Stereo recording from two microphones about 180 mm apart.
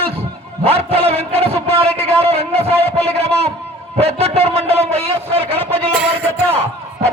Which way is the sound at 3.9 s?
35° right (ahead or behind).